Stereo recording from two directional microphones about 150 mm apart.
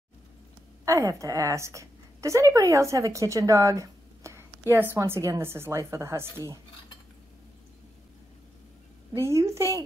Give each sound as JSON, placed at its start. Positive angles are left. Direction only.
{"t": 0.8, "sound": "a woman's voice", "side_deg": -20}
{"t": 9.1, "sound": "a woman's voice", "side_deg": -20}